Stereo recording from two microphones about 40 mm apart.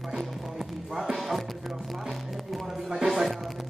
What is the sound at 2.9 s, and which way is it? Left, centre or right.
Music, centre.